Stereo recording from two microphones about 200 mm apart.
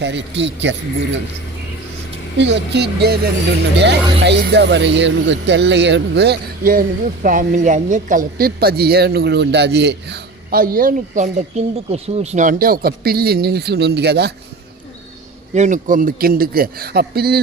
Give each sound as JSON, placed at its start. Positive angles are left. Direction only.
{"t": 0.0, "sound": "speech", "side_deg": -60}
{"t": 2.4, "sound": "speech", "side_deg": -60}
{"t": 15.5, "sound": "speech", "side_deg": -40}